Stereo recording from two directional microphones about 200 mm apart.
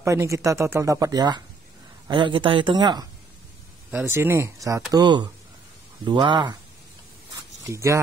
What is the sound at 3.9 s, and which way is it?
Speech, 10° right (ahead or behind).